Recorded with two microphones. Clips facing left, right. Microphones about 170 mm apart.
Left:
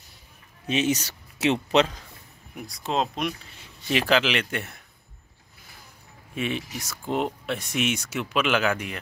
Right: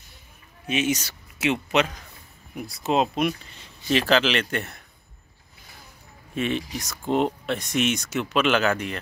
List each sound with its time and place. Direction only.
0.7 s speech: 35° left (ahead or behind)
2.5 s speech: 5° right (ahead or behind)
3.5 s speech: 10° left (ahead or behind)
6.3 s speech: 10° left (ahead or behind)